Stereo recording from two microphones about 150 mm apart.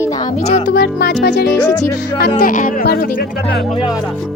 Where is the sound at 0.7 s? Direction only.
90° left.